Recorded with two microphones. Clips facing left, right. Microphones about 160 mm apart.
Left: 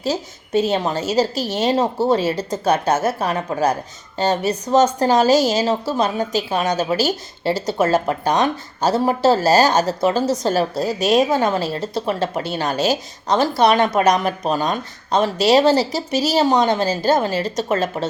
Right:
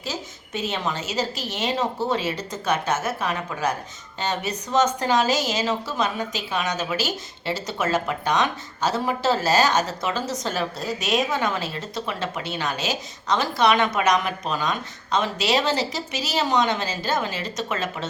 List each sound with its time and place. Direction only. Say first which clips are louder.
0.0 s speech: left 9 dB; 35° left (ahead or behind)